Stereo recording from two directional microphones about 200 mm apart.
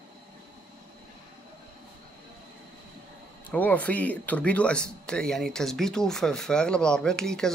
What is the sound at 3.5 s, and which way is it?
Speech, 5° left (ahead or behind).